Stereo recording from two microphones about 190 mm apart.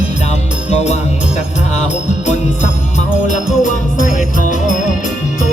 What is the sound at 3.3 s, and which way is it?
Music, 40° left (ahead or behind).